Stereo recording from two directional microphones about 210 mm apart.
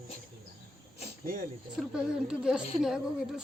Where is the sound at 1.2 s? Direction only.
45° right (ahead or behind).